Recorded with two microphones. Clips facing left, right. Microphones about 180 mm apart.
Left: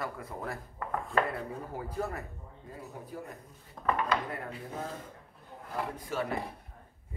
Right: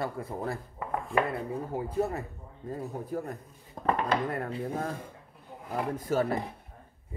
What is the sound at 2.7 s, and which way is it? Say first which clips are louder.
Speech: right 8 dB; 45° right (ahead or behind).